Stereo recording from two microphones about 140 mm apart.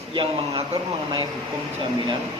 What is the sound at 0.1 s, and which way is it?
Speech, 35° right (ahead or behind).